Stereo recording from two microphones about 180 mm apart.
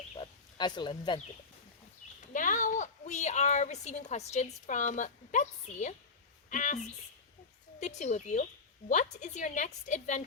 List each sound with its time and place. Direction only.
0.1 s a sound: 25° left (ahead or behind)
2.3 s a woman's voice: 45° left (ahead or behind)
7.8 s a woman's voice: 40° left (ahead or behind)